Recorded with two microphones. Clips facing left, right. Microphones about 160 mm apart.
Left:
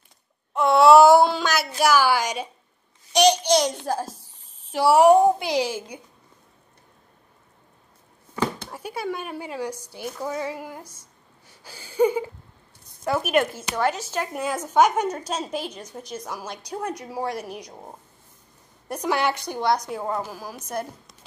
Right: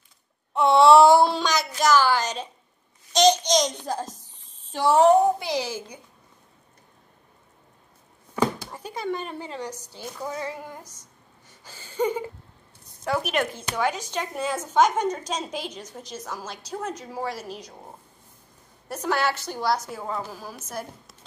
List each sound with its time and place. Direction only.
0.6 s a sound: centre (ahead or behind)
1.8 s a woman's voice: 10° left (ahead or behind)
8.7 s a woman's voice: 10° left (ahead or behind)
18.9 s a woman's voice: 15° left (ahead or behind)
19.6 s a woman's voice: 5° right (ahead or behind)
20.1 s a woman's voice: 10° left (ahead or behind)